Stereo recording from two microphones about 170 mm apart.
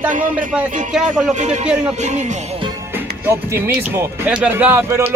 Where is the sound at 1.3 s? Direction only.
45° right (ahead or behind).